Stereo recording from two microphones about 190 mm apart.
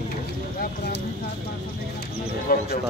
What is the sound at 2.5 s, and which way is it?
Speech, 50° left (ahead or behind).